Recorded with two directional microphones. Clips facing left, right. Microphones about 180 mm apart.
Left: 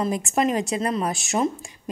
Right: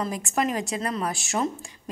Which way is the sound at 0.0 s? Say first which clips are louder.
Left 4 dB; 20° left (ahead or behind).